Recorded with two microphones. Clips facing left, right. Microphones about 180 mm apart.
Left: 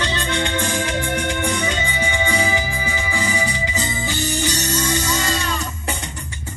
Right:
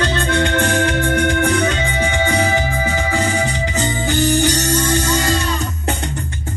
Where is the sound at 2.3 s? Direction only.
55° right (ahead or behind).